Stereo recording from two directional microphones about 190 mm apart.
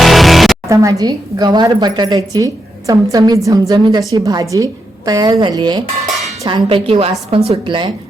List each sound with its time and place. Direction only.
0.0 s music: centre (ahead or behind)
0.7 s a woman's voice: 15° right (ahead or behind)